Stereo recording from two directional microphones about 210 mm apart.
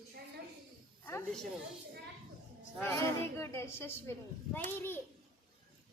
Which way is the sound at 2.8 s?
10° left (ahead or behind).